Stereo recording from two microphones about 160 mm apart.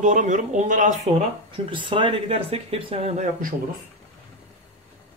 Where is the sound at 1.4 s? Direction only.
30° right (ahead or behind); by 3.5 s 45° right (ahead or behind).